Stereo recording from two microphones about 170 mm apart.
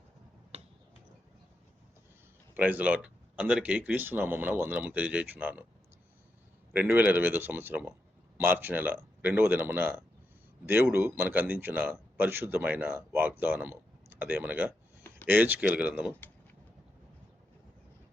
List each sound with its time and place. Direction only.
0.5 s finger snapping: 40° right (ahead or behind)
2.6 s speech: 10° right (ahead or behind)
6.7 s speech: 10° right (ahead or behind)